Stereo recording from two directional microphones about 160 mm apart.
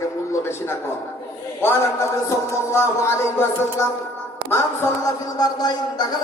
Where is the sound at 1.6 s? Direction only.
15° left (ahead or behind).